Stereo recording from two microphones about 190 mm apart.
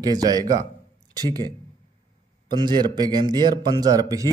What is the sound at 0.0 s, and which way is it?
A man's voice, 20° right (ahead or behind).